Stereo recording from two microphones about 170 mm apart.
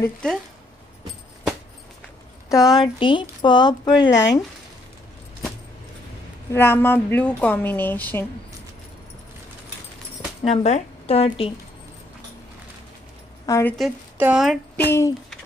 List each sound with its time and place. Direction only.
0.0 s speech: 5° left (ahead or behind)
2.5 s speech: 20° left (ahead or behind)
6.5 s a woman's voice: 15° left (ahead or behind)
10.4 s speech: 40° left (ahead or behind)
13.5 s a woman's voice: 15° left (ahead or behind)
13.7 s speech: centre (ahead or behind)
14.8 s a woman's voice: 15° left (ahead or behind)